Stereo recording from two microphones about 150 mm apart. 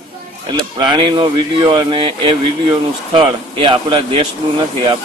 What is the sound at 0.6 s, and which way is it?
Speech, 30° right (ahead or behind).